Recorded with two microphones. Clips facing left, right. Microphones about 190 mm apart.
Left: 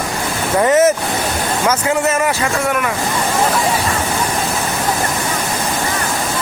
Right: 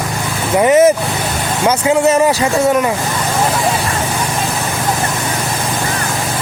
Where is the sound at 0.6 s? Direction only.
15° right (ahead or behind).